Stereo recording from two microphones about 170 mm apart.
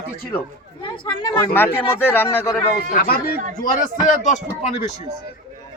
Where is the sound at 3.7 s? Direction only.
45° left (ahead or behind).